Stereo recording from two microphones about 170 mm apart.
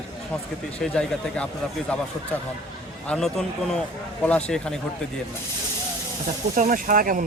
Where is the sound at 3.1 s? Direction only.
5° left (ahead or behind).